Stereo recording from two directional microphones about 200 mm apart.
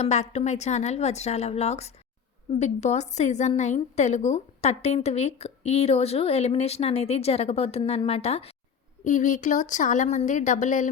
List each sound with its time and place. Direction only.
0.0 s a woman's voice: 35° left (ahead or behind)